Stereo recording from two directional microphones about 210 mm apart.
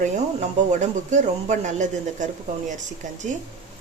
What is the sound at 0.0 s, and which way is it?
A woman's voice, 35° right (ahead or behind).